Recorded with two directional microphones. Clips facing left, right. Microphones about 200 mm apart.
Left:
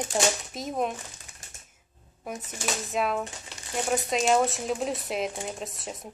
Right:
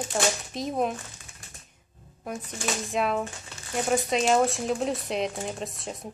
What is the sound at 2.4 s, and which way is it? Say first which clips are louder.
Speech: right 2 dB; centre (ahead or behind).